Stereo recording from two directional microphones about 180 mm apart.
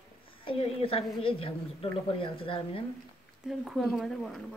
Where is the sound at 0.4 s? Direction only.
30° left (ahead or behind).